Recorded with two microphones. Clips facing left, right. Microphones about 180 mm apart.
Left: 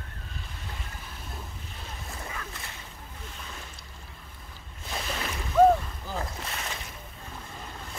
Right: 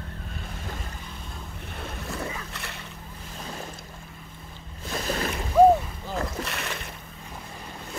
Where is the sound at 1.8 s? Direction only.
75° right (ahead or behind).